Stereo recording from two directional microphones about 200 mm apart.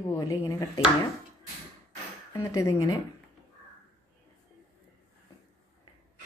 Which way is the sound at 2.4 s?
15° left (ahead or behind).